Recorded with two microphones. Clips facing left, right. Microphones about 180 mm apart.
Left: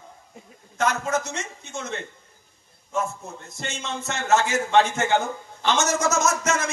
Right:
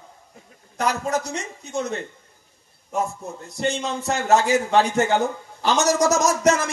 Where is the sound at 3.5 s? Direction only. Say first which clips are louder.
Right 8 dB; 35° right (ahead or behind).